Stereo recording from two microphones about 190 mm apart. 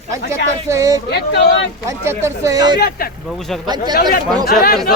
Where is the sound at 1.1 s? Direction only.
65° left (ahead or behind).